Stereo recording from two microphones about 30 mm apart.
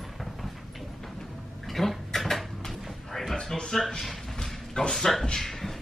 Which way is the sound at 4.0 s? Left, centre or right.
Centre.